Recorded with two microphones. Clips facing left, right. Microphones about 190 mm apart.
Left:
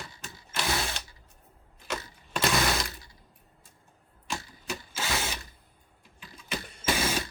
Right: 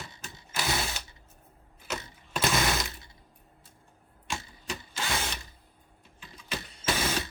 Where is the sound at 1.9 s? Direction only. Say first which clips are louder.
Left 1 dB; centre (ahead or behind).